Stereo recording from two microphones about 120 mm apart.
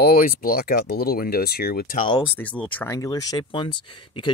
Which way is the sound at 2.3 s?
10° left (ahead or behind).